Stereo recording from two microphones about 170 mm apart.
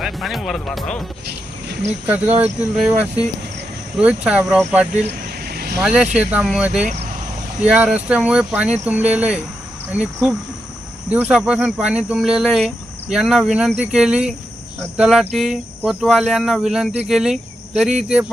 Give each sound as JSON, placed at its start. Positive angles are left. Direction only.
{"t": 0.0, "sound": "speech", "side_deg": 0}
{"t": 1.3, "sound": "wild animals", "side_deg": -75}
{"t": 2.0, "sound": "speech", "side_deg": -10}
{"t": 5.0, "sound": "vehicle", "side_deg": -65}
{"t": 5.8, "sound": "speech", "side_deg": -5}
{"t": 6.8, "sound": "speech", "side_deg": -40}
{"t": 7.6, "sound": "speech", "side_deg": -5}